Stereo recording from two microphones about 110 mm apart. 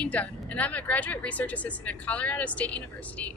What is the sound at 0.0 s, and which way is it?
Speech, 15° left (ahead or behind).